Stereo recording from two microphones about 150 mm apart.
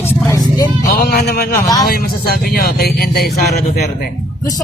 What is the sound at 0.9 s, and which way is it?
Speech, 90° left.